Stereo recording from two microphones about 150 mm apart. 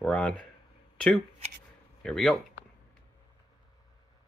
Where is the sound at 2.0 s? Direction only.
5° left (ahead or behind).